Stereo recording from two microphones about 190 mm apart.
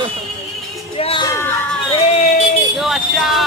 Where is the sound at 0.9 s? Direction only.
30° left (ahead or behind).